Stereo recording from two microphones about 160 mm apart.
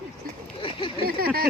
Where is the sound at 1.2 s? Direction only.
70° right (ahead or behind).